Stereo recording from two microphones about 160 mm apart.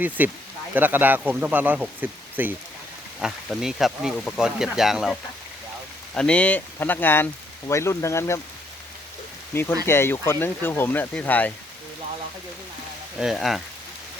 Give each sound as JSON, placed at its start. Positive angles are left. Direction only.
{"t": 0.2, "sound": "speech", "side_deg": -10}
{"t": 6.1, "sound": "speech", "side_deg": 5}
{"t": 9.8, "sound": "speech", "side_deg": 15}
{"t": 13.1, "sound": "speech", "side_deg": 0}